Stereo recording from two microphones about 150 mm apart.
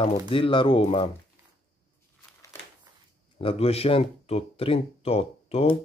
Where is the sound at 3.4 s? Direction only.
40° left (ahead or behind).